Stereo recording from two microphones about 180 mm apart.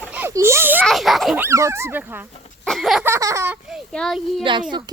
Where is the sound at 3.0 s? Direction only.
15° right (ahead or behind).